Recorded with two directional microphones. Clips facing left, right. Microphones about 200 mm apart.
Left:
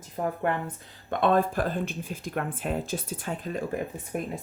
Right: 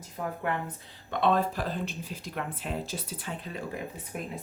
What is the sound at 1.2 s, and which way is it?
Speech, 50° left (ahead or behind).